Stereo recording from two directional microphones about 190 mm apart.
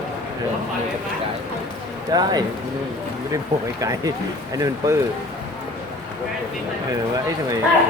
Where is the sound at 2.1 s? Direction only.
20° right (ahead or behind).